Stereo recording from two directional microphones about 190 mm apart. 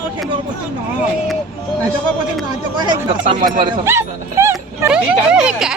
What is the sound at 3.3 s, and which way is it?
Speech, 45° right (ahead or behind).